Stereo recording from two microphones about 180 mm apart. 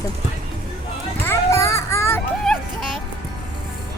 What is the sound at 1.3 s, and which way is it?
Children playing, 15° left (ahead or behind).